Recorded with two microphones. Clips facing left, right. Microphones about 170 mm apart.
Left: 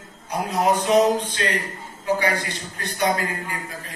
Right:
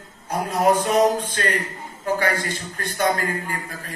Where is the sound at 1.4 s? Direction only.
50° right (ahead or behind).